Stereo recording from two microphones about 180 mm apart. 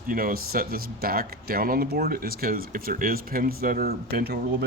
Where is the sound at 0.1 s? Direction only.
55° right (ahead or behind).